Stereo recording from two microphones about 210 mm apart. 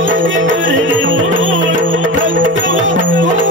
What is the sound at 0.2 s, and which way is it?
Music, 65° right (ahead or behind).